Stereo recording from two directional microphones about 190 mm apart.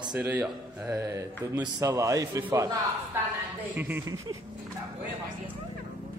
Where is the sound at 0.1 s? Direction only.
10° right (ahead or behind).